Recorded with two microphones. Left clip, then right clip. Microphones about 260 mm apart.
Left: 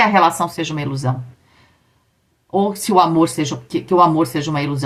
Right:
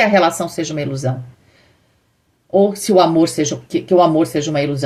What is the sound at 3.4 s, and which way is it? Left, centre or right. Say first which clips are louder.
Speech: right 3 dB; centre.